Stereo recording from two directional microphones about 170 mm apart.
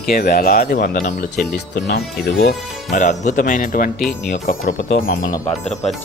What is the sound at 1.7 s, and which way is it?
Speech, 70° left (ahead or behind).